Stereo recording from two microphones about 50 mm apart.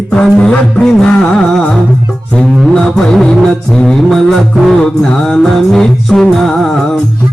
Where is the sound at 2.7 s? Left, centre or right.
Centre.